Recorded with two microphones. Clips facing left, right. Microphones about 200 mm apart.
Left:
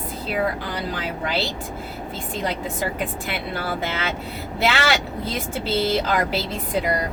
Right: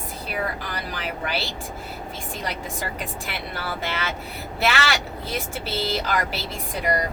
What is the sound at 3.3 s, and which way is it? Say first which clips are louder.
Speech: left 4 dB; 20° left (ahead or behind).